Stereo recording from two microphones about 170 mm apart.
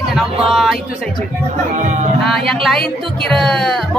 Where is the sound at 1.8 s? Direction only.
45° right (ahead or behind).